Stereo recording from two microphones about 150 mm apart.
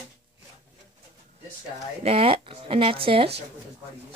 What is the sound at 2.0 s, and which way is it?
Speech, 40° right (ahead or behind).